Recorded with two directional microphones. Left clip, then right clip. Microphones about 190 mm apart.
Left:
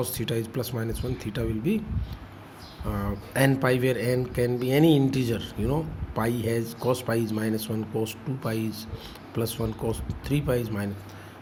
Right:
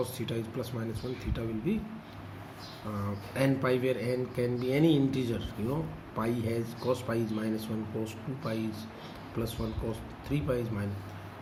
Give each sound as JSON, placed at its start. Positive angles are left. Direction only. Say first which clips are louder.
{"t": 0.0, "sound": "speech", "louder": "left 5 dB", "side_deg": 55}
{"t": 3.0, "sound": "speech", "louder": "left 6 dB", "side_deg": 55}